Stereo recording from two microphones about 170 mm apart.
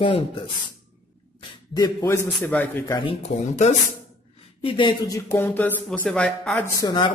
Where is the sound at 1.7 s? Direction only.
20° left (ahead or behind).